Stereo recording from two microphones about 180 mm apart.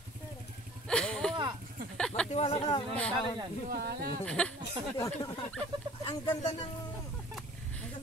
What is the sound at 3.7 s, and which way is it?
Speech, 60° right (ahead or behind).